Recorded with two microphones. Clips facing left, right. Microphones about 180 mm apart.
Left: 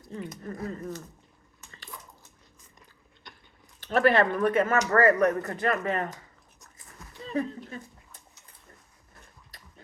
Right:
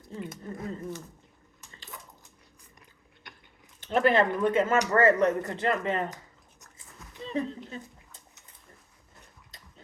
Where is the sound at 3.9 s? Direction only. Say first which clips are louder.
Left 1 dB; 20° right (ahead or behind).